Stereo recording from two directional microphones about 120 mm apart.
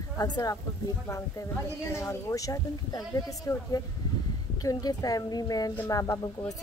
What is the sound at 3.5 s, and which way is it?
Speech, 15° left (ahead or behind).